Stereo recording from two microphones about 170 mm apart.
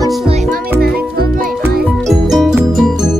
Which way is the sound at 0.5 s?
65° right (ahead or behind).